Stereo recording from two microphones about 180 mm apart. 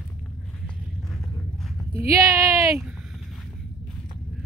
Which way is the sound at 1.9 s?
15° right (ahead or behind).